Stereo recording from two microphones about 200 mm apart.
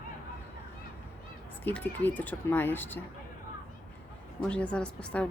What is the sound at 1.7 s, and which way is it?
Speech, 10° left (ahead or behind).